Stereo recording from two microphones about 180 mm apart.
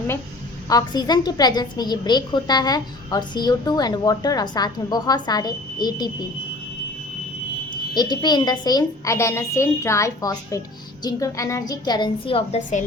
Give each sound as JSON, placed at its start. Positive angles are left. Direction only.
{"t": 0.7, "sound": "a woman's voice", "side_deg": 20}
{"t": 7.9, "sound": "a woman's voice", "side_deg": 25}